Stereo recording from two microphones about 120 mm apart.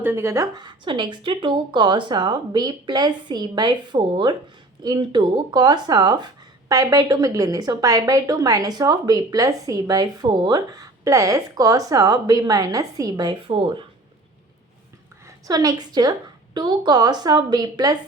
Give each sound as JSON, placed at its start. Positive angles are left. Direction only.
{"t": 0.0, "sound": "speech", "side_deg": -20}
{"t": 13.3, "sound": "speech", "side_deg": -45}
{"t": 15.4, "sound": "speech", "side_deg": -30}